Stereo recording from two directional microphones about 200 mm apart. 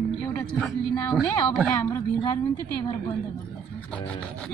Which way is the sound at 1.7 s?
15° left (ahead or behind).